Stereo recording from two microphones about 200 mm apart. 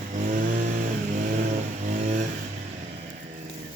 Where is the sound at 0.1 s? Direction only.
40° right (ahead or behind).